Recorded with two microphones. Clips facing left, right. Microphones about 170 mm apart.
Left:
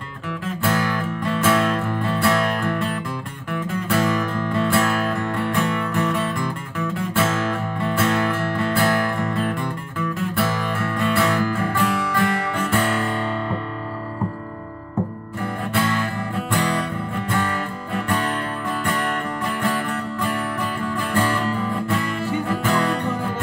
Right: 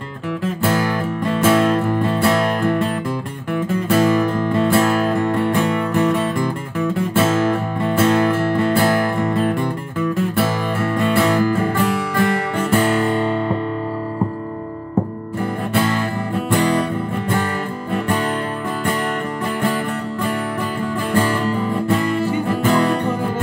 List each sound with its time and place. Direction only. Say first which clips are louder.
0.7 s music: right 2 dB; 30° right (ahead or behind)
15.7 s music: right 3 dB; 30° right (ahead or behind)
21.8 s music: right 6 dB; 30° right (ahead or behind)